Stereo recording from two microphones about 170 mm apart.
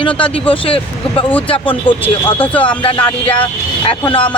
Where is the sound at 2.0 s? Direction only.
10° left (ahead or behind).